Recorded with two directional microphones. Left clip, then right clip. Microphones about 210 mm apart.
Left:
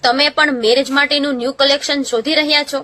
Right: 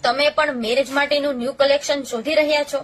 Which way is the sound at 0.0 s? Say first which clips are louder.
Left 5 dB; 40° left (ahead or behind).